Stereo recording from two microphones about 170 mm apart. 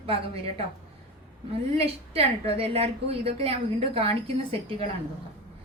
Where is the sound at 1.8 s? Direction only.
35° right (ahead or behind).